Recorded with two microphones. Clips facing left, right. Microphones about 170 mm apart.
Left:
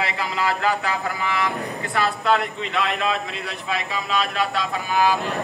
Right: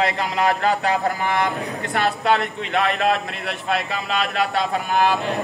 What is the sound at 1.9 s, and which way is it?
Speech, 50° right (ahead or behind).